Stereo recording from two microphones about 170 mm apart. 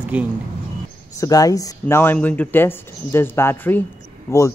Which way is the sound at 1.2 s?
20° left (ahead or behind).